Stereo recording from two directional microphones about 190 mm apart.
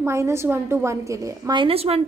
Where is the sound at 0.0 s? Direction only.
15° right (ahead or behind).